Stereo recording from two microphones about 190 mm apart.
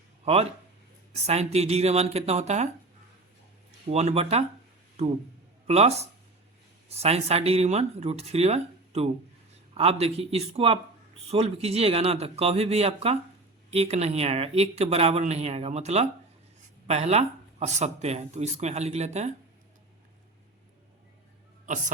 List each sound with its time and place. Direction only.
1.1 s speech: 35° right (ahead or behind)
3.8 s speech: 35° right (ahead or behind)
5.6 s speech: 35° right (ahead or behind)